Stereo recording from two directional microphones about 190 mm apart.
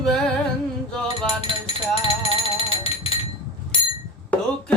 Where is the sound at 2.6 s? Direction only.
30° left (ahead or behind).